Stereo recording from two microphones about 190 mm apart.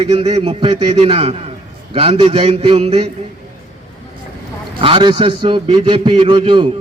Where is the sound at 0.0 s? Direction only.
30° right (ahead or behind).